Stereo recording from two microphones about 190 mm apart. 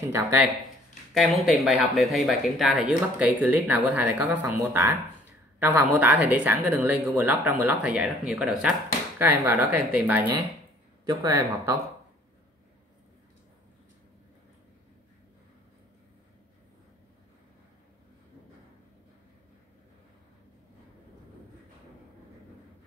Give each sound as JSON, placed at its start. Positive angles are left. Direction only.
{"t": 0.0, "sound": "speech", "side_deg": -15}
{"t": 1.1, "sound": "speech", "side_deg": 0}